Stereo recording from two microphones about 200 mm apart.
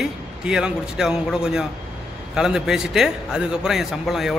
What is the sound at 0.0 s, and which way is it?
A man's voice, 5° right (ahead or behind).